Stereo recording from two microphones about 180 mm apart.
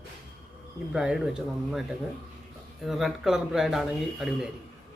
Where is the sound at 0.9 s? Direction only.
5° right (ahead or behind).